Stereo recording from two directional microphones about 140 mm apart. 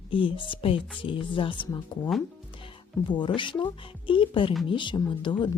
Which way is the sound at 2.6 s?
35° left (ahead or behind).